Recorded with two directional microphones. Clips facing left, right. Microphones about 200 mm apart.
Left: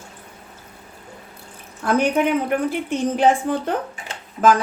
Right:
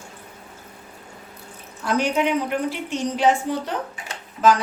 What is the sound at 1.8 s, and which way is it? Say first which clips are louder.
A woman's voice: left 3 dB; 55° left (ahead or behind).